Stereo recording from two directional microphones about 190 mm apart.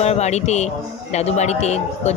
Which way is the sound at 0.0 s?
35° left (ahead or behind).